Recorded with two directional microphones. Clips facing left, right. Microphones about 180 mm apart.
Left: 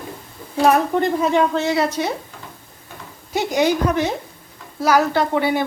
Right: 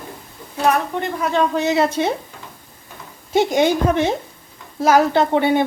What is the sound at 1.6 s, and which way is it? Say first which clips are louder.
Speech: right 2 dB; 20° right (ahead or behind).